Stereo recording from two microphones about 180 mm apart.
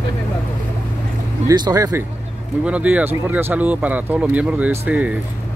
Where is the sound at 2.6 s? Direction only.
5° right (ahead or behind).